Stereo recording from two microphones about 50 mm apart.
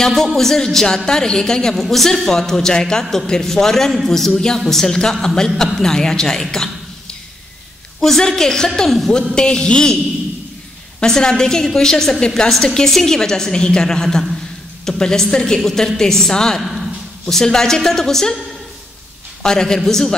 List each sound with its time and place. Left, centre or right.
0.0 s a woman's voice: centre
8.0 s a woman's voice: centre
9.3 s a woman's voice: centre
11.0 s a woman's voice: centre
19.4 s a woman's voice: centre